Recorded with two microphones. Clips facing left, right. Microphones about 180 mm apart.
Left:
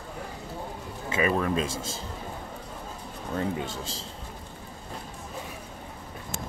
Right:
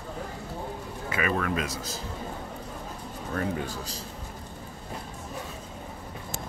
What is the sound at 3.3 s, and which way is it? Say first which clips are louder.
Speech: left 1 dB; 20° left (ahead or behind).